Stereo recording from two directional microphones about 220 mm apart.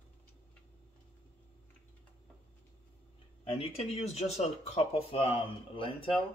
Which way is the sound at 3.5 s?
25° left (ahead or behind).